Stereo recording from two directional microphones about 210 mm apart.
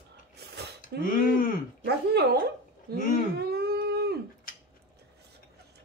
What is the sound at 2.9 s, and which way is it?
Dog, 50° right (ahead or behind).